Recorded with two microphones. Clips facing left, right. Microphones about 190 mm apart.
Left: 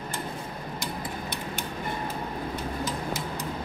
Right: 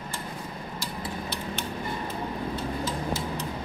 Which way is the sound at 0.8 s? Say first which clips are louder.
Right 1 dB; 15° left (ahead or behind).